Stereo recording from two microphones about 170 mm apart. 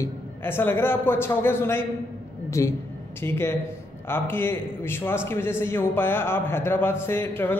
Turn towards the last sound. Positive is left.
turn(degrees=15)  # may be behind; listen again after turning